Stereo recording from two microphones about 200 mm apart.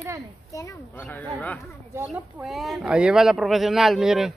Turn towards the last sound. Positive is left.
turn(degrees=0)  # may be behind; listen again after turning